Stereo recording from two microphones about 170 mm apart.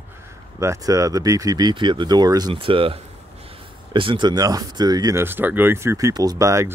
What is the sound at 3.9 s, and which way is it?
Speech, 30° right (ahead or behind).